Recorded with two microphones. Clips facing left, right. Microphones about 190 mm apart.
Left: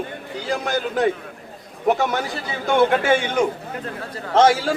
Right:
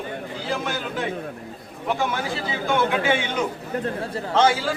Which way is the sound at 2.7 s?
45° left (ahead or behind).